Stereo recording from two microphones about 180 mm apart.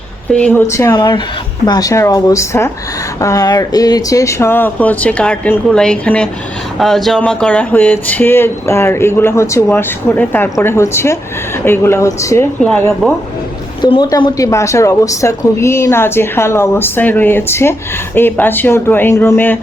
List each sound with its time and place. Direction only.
0.3 s a woman's voice: 5° left (ahead or behind)
0.9 s a woman's voice: 25° left (ahead or behind); by 12.9 s 10° left (ahead or behind)
13.8 s a woman's voice: 25° left (ahead or behind)